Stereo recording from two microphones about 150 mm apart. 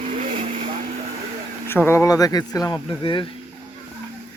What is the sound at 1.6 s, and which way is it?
Speech, 15° left (ahead or behind).